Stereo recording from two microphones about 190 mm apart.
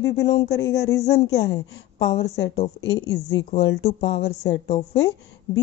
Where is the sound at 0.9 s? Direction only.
15° left (ahead or behind).